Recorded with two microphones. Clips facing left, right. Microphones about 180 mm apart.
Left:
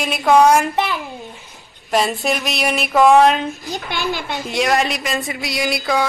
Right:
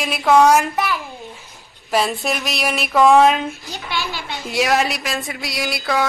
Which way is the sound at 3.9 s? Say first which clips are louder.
Left 3 dB; 50° left (ahead or behind).